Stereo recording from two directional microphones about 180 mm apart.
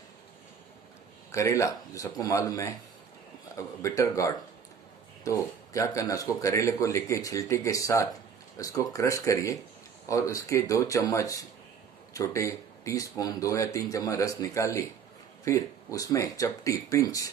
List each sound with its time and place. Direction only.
1.3 s speech: 15° left (ahead or behind)